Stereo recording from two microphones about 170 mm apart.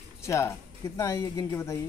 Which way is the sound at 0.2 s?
15° left (ahead or behind).